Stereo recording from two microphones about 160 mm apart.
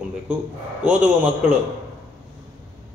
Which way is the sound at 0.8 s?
10° right (ahead or behind).